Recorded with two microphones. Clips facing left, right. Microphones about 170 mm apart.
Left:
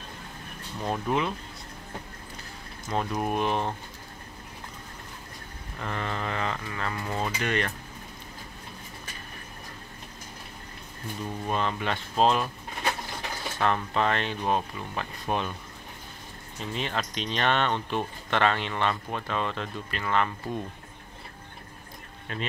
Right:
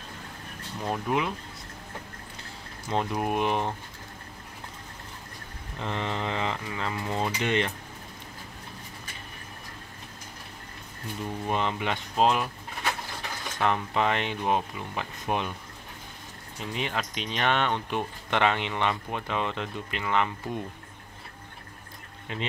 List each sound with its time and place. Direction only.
0.8 s speech: 5° right (ahead or behind)
2.9 s speech: 15° right (ahead or behind)
5.8 s speech: 20° right (ahead or behind)
11.4 s speech: 15° right (ahead or behind)
13.6 s speech: 15° right (ahead or behind)
16.7 s speech: 15° right (ahead or behind)
22.3 s speech: 20° right (ahead or behind)